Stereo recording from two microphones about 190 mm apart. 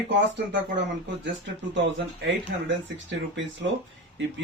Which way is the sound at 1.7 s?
70° right (ahead or behind).